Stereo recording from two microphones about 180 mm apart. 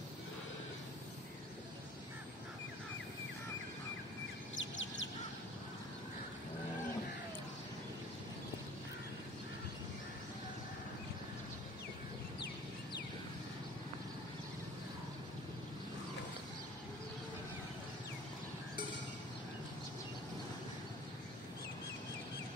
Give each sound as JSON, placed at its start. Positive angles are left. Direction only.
{"t": 4.6, "sound": "bird", "side_deg": 90}